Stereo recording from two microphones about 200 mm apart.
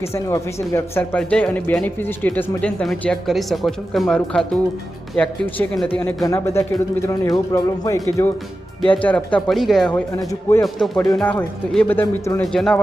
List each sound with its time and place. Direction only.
0.0 s speech: 15° left (ahead or behind)